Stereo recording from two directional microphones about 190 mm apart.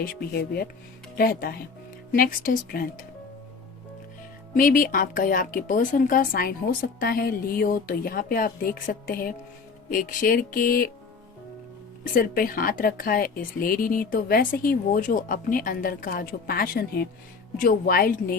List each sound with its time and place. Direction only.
0.0 s speech: 55° left (ahead or behind)
4.5 s speech: 45° left (ahead or behind)
12.1 s speech: 50° left (ahead or behind)